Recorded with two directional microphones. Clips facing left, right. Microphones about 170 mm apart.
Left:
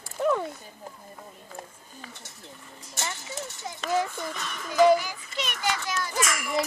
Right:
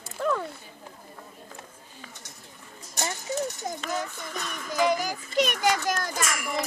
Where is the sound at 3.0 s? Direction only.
40° right (ahead or behind).